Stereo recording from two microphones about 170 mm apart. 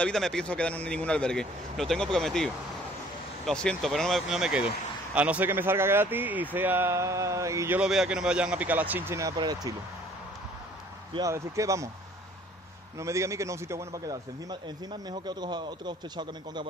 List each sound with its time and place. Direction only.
0.0 s a man's voice: 5° left (ahead or behind); by 9.8 s 20° right (ahead or behind)
11.1 s a man's voice: 20° right (ahead or behind)
13.0 s a man's voice: 15° right (ahead or behind)